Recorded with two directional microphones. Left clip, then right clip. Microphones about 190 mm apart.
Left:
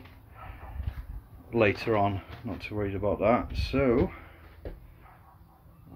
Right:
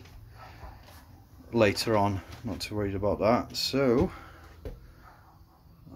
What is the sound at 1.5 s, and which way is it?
Speech, 15° right (ahead or behind).